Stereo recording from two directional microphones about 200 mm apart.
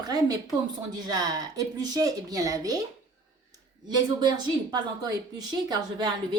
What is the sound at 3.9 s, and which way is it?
Speech, 20° right (ahead or behind).